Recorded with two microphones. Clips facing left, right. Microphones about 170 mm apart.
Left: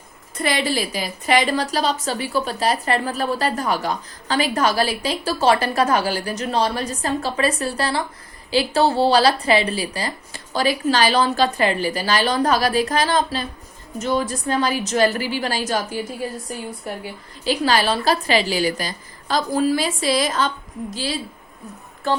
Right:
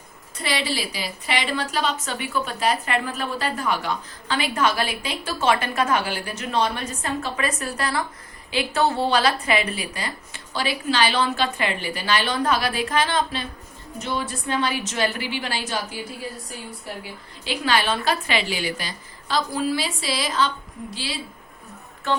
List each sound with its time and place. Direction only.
0.3 s a woman's voice: 50° left (ahead or behind)
17.4 s a woman's voice: 40° left (ahead or behind)